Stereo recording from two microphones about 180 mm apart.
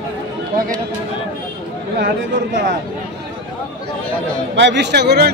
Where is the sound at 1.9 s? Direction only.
75° right (ahead or behind).